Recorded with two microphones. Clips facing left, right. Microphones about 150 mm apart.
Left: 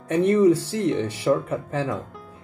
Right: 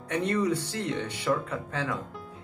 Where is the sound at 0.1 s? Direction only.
25° left (ahead or behind).